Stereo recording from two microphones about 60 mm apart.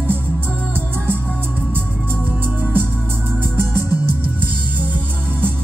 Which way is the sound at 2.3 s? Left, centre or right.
Right.